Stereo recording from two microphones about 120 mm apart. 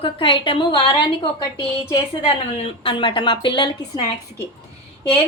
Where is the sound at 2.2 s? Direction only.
55° left (ahead or behind).